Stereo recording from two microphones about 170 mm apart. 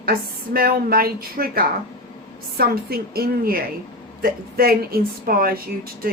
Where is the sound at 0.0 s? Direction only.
60° right (ahead or behind).